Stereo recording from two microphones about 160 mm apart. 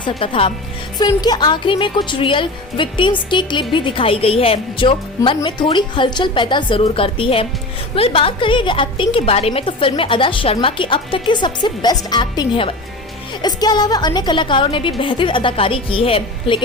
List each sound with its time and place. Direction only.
0.2 s speech: 35° left (ahead or behind)
0.9 s speech: 25° left (ahead or behind)